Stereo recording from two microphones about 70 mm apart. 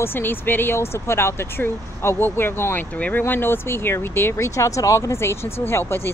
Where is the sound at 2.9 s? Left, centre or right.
Left.